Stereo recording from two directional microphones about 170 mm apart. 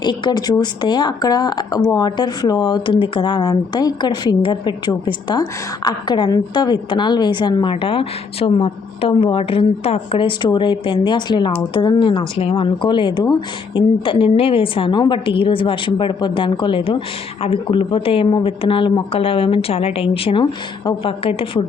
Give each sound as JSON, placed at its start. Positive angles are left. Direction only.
{"t": 0.0, "sound": "speech", "side_deg": 25}